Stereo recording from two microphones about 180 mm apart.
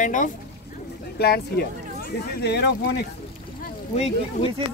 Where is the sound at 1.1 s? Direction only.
60° left (ahead or behind).